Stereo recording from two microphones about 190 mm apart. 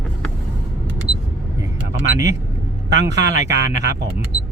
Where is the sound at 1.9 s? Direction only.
70° right (ahead or behind).